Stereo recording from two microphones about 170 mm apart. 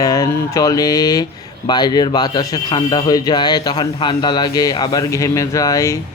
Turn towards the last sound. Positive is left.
turn(degrees=20)  # may be behind; listen again after turning